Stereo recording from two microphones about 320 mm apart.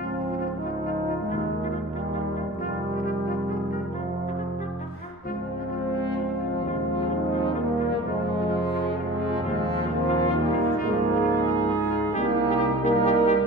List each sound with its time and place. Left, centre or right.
12.8 s brass instrument: left